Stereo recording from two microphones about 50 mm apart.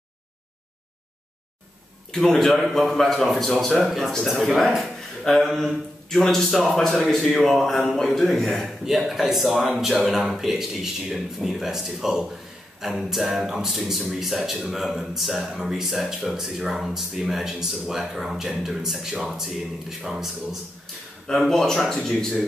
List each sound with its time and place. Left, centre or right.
2.1 s speech: centre
21.4 s speech: centre